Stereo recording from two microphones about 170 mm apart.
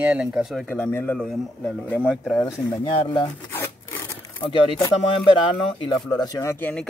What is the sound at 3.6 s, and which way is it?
Zipper, 10° left (ahead or behind).